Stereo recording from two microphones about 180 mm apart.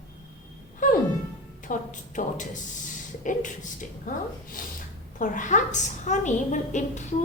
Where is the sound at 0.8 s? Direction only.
45° left (ahead or behind).